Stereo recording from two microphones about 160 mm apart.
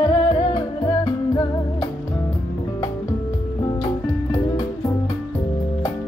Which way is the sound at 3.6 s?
25° left (ahead or behind).